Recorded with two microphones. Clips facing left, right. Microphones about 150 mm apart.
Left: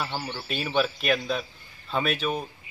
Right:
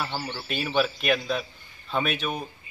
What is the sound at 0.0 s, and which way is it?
Speech, 5° right (ahead or behind).